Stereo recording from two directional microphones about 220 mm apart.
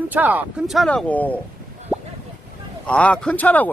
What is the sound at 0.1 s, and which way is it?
Speech, 5° right (ahead or behind).